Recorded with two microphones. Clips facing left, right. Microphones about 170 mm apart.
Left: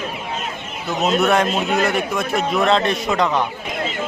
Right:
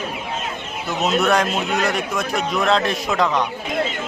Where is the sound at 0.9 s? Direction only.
Centre (ahead or behind).